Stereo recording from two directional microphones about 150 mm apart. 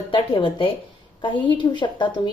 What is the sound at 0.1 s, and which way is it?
A woman's voice, 35° left (ahead or behind).